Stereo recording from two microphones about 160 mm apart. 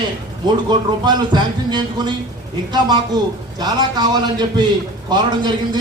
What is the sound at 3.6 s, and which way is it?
A man's voice, 25° right (ahead or behind).